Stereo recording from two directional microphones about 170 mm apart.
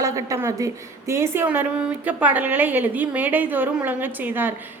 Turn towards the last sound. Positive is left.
turn(degrees=-10)  # may be behind; listen again after turning